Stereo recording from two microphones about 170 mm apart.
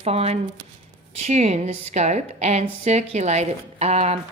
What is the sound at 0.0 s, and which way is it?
A woman's voice, 35° right (ahead or behind).